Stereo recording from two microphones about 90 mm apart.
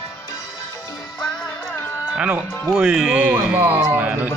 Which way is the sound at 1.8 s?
25° left (ahead or behind).